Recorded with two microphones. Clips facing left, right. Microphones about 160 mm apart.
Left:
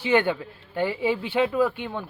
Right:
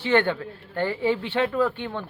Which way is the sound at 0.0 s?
10° left (ahead or behind).